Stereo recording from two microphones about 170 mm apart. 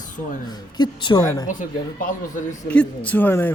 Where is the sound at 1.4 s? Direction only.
50° left (ahead or behind).